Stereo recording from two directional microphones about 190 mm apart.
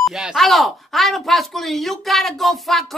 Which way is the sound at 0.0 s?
5° right (ahead or behind).